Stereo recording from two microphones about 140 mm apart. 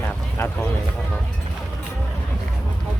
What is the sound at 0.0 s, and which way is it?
Vehicle, 15° left (ahead or behind).